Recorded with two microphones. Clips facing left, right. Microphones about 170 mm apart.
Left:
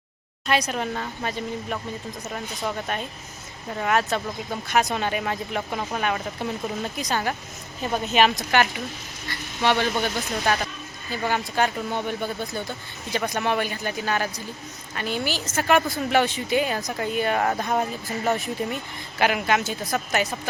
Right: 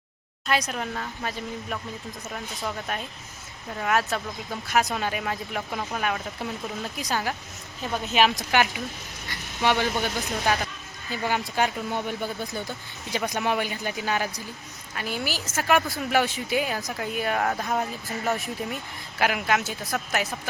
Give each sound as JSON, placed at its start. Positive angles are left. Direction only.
{"t": 0.4, "sound": "a woman's voice", "side_deg": 0}